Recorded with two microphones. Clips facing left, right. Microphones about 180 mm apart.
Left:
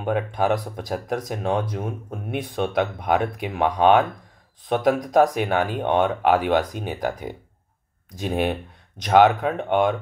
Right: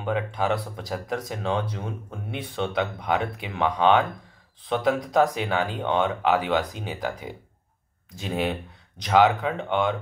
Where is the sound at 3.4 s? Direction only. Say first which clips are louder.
Left 3 dB; 20° left (ahead or behind).